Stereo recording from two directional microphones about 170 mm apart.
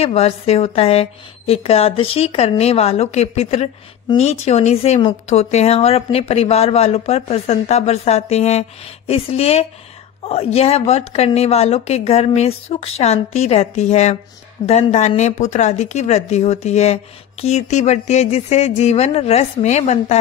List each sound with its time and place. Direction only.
0.0 s speech: 35° left (ahead or behind)